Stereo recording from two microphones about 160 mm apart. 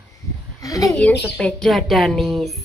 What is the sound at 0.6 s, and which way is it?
Speech, 20° left (ahead or behind).